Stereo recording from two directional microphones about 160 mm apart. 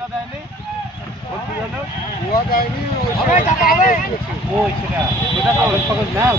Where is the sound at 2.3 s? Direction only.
70° left (ahead or behind).